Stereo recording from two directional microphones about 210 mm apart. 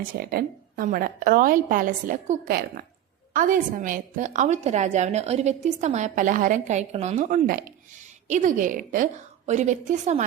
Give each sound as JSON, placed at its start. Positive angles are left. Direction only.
{"t": 0.2, "sound": "a woman's voice", "side_deg": -45}